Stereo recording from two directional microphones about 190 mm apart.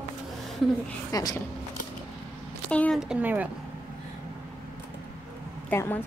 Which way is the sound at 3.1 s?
10° right (ahead or behind).